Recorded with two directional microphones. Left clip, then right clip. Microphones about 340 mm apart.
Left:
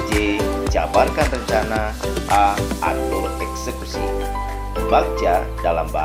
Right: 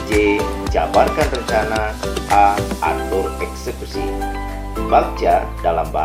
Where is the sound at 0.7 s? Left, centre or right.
Centre.